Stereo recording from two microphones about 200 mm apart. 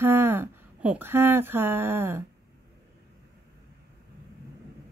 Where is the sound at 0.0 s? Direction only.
10° right (ahead or behind).